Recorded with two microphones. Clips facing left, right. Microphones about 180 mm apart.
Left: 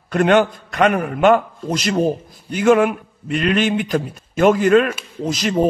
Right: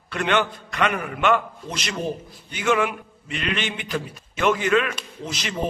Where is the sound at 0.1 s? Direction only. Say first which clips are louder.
Left 8 dB; 45° left (ahead or behind).